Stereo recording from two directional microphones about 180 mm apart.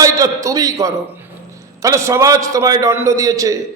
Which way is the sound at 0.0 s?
20° right (ahead or behind).